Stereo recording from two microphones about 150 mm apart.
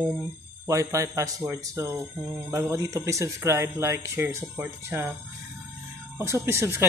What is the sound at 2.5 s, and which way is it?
Speech, 20° right (ahead or behind).